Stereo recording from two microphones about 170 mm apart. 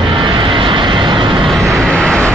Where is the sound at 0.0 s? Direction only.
30° right (ahead or behind).